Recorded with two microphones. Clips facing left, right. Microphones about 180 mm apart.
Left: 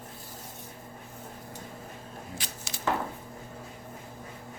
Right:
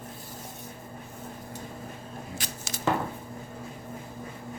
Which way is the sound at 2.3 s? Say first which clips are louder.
Right 3 dB; 45° right (ahead or behind).